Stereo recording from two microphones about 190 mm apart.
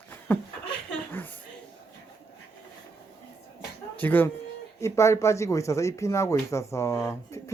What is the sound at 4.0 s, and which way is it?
Speech, 10° left (ahead or behind).